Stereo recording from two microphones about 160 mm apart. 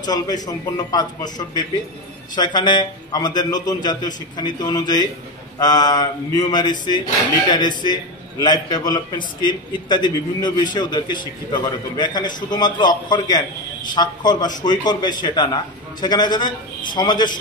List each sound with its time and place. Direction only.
0.0 s a man's voice: 25° left (ahead or behind)